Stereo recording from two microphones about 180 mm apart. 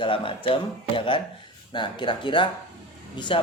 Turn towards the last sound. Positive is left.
turn(degrees=25)  # may be behind; listen again after turning